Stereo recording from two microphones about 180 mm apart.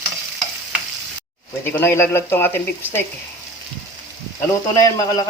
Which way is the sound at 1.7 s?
15° left (ahead or behind).